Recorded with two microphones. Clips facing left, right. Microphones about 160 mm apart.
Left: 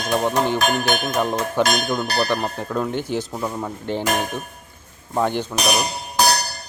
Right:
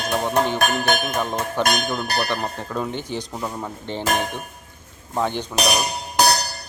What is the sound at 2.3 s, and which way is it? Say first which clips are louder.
Cutlery: left 3 dB; 10° left (ahead or behind).